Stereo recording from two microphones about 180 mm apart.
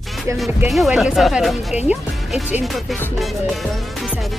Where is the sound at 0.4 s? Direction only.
Centre (ahead or behind).